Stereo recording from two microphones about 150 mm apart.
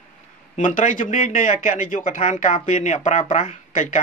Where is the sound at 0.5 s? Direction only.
60° left (ahead or behind).